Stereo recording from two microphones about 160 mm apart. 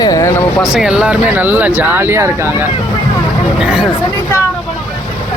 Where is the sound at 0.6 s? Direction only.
5° right (ahead or behind).